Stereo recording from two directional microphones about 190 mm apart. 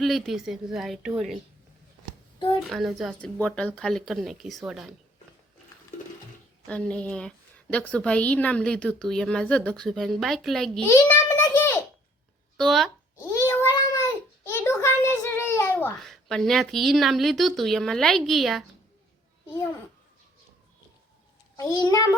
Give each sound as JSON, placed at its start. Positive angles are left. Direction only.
{"t": 0.0, "sound": "a woman's voice", "side_deg": 0}
{"t": 2.6, "sound": "a woman's voice", "side_deg": 0}
{"t": 6.7, "sound": "a woman's voice", "side_deg": 5}
{"t": 10.8, "sound": "a sound", "side_deg": 15}
{"t": 12.5, "sound": "speech", "side_deg": 0}
{"t": 13.1, "sound": "a sound", "side_deg": 15}
{"t": 16.0, "sound": "a woman's voice", "side_deg": 0}
{"t": 21.6, "sound": "a child's voice", "side_deg": 20}